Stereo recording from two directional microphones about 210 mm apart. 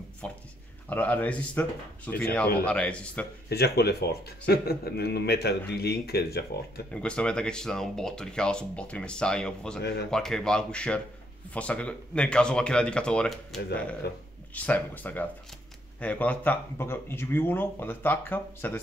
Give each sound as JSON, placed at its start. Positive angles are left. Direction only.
{"t": 0.2, "sound": "speech", "side_deg": 5}
{"t": 3.4, "sound": "a man's voice", "side_deg": 50}
{"t": 6.9, "sound": "speech", "side_deg": 5}